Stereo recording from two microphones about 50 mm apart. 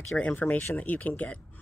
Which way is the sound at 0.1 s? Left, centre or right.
Left.